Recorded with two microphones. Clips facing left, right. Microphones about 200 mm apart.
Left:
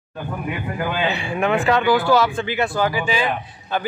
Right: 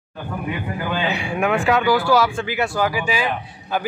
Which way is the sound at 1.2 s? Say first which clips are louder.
Even; 10° right (ahead or behind).